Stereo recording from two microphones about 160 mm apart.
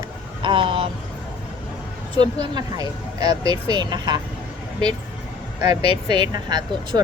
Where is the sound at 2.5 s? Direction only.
25° right (ahead or behind).